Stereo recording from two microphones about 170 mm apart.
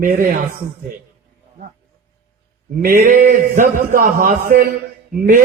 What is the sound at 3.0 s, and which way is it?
A man's voice, 50° right (ahead or behind).